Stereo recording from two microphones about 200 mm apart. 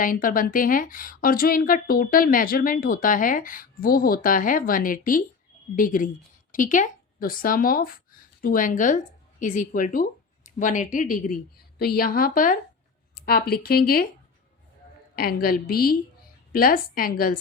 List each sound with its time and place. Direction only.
0.0 s a woman's voice: 45° left (ahead or behind)
15.1 s a woman's voice: 50° left (ahead or behind)